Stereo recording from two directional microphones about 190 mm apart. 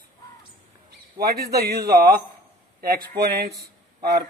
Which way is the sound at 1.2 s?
55° right (ahead or behind).